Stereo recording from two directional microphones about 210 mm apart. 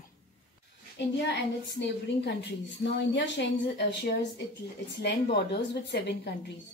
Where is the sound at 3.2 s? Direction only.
55° left (ahead or behind).